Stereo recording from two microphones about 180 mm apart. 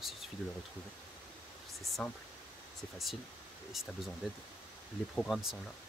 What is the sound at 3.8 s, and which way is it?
Speech, centre (ahead or behind).